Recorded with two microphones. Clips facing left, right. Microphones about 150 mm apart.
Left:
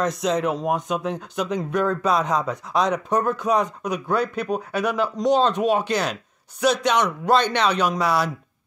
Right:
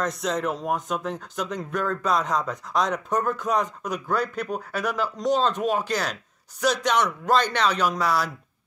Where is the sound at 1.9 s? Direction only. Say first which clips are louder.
Even; centre (ahead or behind).